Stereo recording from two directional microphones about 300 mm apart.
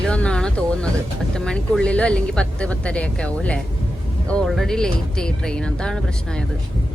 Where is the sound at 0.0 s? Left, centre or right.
Centre.